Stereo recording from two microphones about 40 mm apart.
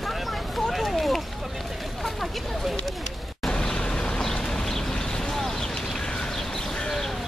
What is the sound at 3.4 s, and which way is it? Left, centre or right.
Vehicle, centre.